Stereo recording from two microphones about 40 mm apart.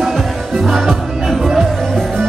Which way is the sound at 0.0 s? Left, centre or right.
Centre.